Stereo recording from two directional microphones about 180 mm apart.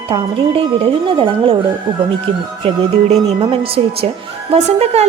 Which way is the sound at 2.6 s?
35° right (ahead or behind).